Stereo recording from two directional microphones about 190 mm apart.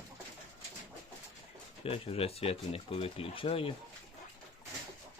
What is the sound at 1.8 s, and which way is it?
Speech, 30° left (ahead or behind).